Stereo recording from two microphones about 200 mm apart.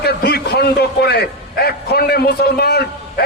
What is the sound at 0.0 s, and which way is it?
A man's voice, 50° left (ahead or behind).